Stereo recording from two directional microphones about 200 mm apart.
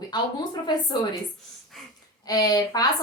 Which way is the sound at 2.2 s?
20° left (ahead or behind).